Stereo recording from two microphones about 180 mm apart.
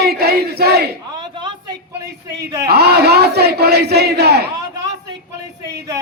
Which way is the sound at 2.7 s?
65° right (ahead or behind).